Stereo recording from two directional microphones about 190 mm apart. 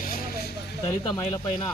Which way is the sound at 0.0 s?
50° left (ahead or behind).